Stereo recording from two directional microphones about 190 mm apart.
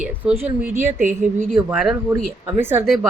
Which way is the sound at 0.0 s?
10° right (ahead or behind).